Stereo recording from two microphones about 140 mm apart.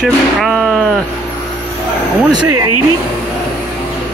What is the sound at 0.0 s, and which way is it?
Speech, centre (ahead or behind).